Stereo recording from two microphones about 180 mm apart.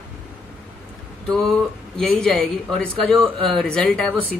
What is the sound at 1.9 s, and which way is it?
Speech, 5° left (ahead or behind).